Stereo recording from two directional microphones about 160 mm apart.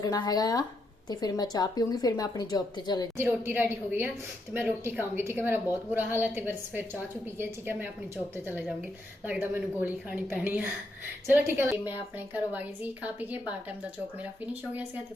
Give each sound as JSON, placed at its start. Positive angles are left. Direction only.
{"t": 0.0, "sound": "a woman's voice", "side_deg": 25}
{"t": 3.2, "sound": "a woman's voice", "side_deg": -15}
{"t": 14.5, "sound": "a woman's voice", "side_deg": -10}